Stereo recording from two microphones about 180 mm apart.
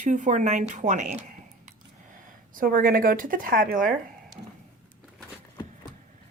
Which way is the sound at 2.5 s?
50° right (ahead or behind).